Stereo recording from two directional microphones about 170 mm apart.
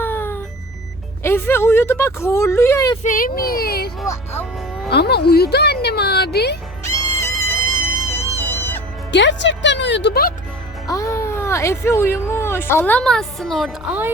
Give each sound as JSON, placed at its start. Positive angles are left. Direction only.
{"t": 0.0, "sound": "music", "side_deg": 10}
{"t": 1.2, "sound": "speech", "side_deg": 15}
{"t": 3.0, "sound": "speech", "side_deg": 50}
{"t": 4.0, "sound": "speech", "side_deg": 15}
{"t": 4.9, "sound": "speech", "side_deg": 70}
{"t": 6.8, "sound": "music", "side_deg": 15}
{"t": 9.1, "sound": "speech", "side_deg": 90}
{"t": 10.8, "sound": "speech", "side_deg": 20}